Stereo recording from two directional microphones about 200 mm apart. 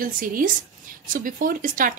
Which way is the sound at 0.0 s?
45° right (ahead or behind).